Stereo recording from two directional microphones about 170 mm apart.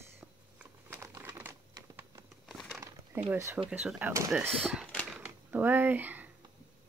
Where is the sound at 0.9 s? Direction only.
15° right (ahead or behind).